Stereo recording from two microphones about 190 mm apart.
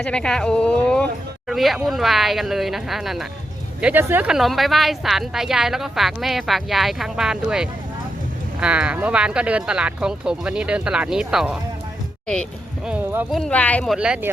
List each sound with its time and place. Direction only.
0.0 s a woman's voice: 5° left (ahead or behind)
12.9 s speech: 10° right (ahead or behind)
13.3 s a woman's voice: 5° left (ahead or behind)